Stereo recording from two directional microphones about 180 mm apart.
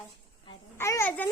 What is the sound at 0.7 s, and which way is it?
Speech, 15° left (ahead or behind).